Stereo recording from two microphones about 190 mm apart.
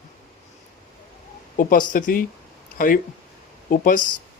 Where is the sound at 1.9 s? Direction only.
45° left (ahead or behind).